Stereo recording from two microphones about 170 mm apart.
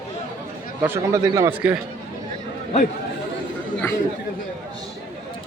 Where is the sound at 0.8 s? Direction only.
15° right (ahead or behind).